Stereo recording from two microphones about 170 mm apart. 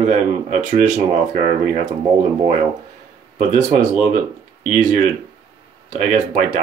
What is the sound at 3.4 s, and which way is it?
Speech, 45° right (ahead or behind).